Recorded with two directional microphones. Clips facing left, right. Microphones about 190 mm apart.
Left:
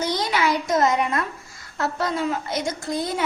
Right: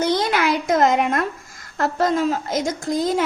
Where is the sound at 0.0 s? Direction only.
55° right (ahead or behind).